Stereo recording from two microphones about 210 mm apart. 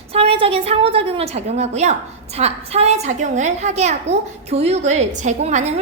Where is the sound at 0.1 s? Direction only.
30° right (ahead or behind).